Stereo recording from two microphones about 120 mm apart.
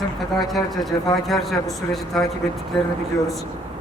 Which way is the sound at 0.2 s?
Centre (ahead or behind).